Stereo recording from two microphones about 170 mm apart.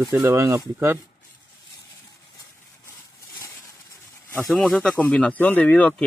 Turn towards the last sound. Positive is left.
turn(degrees=10)  # may be behind; listen again after turning